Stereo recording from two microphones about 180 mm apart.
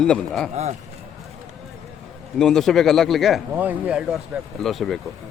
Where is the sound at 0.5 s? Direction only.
40° right (ahead or behind).